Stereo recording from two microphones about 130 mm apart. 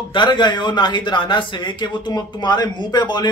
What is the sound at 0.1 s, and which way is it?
A man's voice, 35° left (ahead or behind).